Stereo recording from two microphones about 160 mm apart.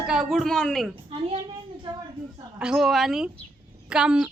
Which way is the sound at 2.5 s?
5° right (ahead or behind).